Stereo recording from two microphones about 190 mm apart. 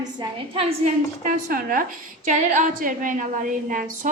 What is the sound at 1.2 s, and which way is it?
A woman's voice, 45° right (ahead or behind).